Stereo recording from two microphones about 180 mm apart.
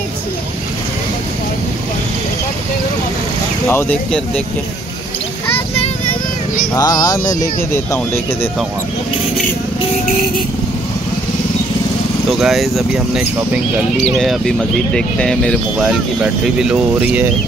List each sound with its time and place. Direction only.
3.6 s speech: 10° left (ahead or behind)
5.8 s vehicle: 45° left (ahead or behind)
6.7 s speech: 20° left (ahead or behind)
12.3 s speech: centre (ahead or behind)